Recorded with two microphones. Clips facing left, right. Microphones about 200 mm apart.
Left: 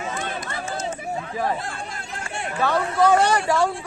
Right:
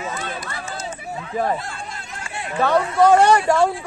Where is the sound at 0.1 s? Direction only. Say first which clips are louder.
Even; 50° left (ahead or behind).